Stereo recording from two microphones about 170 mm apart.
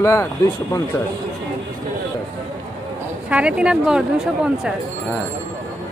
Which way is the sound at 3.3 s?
5° right (ahead or behind).